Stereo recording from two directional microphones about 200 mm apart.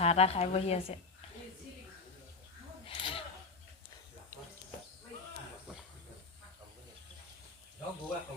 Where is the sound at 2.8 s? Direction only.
25° left (ahead or behind).